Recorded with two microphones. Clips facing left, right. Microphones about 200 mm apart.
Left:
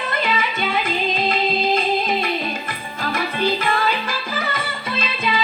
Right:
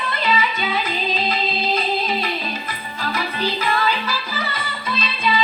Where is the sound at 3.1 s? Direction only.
50° left (ahead or behind).